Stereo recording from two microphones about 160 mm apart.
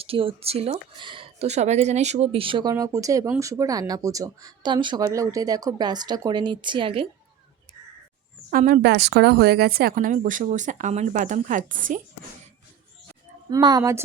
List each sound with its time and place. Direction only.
0.0 s speech: 35° right (ahead or behind)
8.4 s speech: 60° right (ahead or behind)
13.5 s speech: 25° right (ahead or behind)